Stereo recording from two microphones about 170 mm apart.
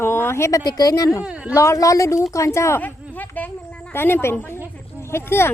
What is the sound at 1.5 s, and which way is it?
Speech, 20° left (ahead or behind).